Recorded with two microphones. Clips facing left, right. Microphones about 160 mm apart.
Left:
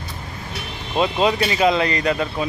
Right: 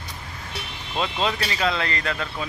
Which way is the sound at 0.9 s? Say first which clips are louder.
Left 7 dB; 15° left (ahead or behind).